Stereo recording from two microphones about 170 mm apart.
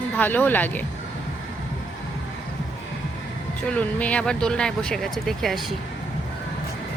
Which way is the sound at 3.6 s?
5° left (ahead or behind).